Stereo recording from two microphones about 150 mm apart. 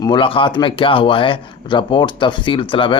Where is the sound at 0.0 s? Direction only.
35° left (ahead or behind).